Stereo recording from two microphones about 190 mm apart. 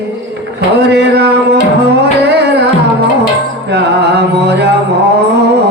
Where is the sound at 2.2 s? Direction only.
60° right (ahead or behind).